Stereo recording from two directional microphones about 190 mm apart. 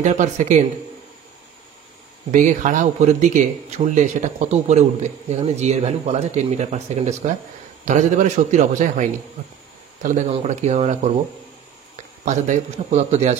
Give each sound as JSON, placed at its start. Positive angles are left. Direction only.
{"t": 0.0, "sound": "speech", "side_deg": -40}
{"t": 2.3, "sound": "speech", "side_deg": -40}
{"t": 10.3, "sound": "speech", "side_deg": -35}
{"t": 12.3, "sound": "speech", "side_deg": -40}